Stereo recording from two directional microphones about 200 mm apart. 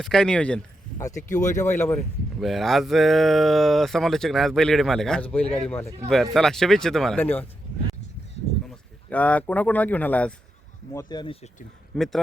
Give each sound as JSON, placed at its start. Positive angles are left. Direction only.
{"t": 0.0, "sound": "speech", "side_deg": 5}
{"t": 2.4, "sound": "speech", "side_deg": 0}
{"t": 8.7, "sound": "speech", "side_deg": 5}
{"t": 10.9, "sound": "speech", "side_deg": 20}
{"t": 11.9, "sound": "speech", "side_deg": 0}